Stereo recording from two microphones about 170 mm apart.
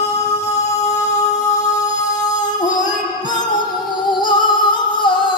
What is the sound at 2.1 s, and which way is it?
Singing, 25° left (ahead or behind).